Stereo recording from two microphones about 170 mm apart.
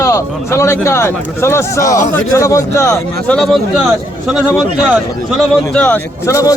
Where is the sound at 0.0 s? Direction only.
15° left (ahead or behind).